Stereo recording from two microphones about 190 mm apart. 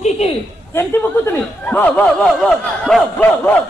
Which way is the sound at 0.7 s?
10° left (ahead or behind).